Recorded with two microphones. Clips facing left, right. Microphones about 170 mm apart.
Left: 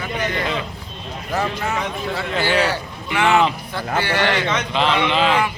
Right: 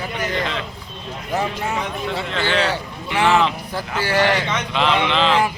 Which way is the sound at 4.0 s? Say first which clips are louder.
Right 3 dB; 40° right (ahead or behind).